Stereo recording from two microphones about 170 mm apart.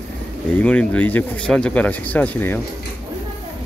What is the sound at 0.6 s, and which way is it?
Speech, 10° left (ahead or behind).